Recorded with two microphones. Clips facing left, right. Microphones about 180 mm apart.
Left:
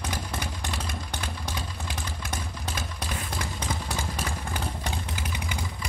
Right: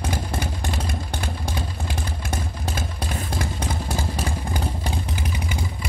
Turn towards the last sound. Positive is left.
turn(degrees=-35)  # may be behind; listen again after turning